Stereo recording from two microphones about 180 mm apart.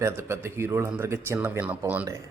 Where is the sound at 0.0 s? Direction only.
15° right (ahead or behind).